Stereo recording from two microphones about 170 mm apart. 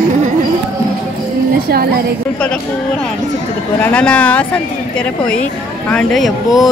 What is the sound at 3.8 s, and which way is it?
Speech, 10° left (ahead or behind).